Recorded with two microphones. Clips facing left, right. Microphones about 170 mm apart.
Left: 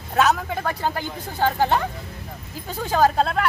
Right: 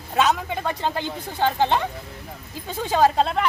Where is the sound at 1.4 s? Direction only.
5° left (ahead or behind).